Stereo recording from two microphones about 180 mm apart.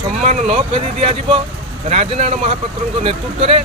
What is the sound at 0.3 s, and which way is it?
Speech, 35° right (ahead or behind).